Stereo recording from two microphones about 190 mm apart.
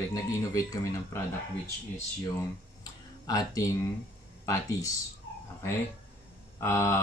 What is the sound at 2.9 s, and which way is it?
Music, 20° left (ahead or behind).